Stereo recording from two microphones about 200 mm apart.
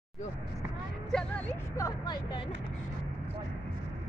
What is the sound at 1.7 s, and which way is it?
Speech, 20° left (ahead or behind).